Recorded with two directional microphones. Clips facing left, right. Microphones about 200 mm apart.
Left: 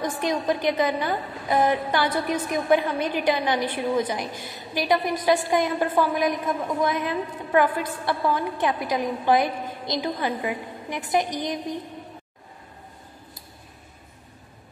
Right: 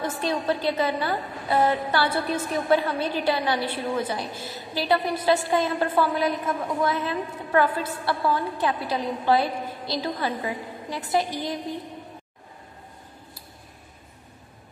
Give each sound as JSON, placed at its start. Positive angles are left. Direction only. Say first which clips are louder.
{"t": 0.2, "sound": "a woman's voice", "louder": "left 1 dB", "side_deg": 15}